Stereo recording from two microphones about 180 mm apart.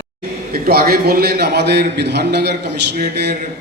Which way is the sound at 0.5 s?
55° right (ahead or behind).